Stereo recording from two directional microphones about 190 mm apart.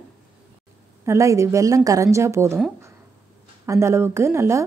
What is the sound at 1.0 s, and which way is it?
A woman's voice, 15° right (ahead or behind).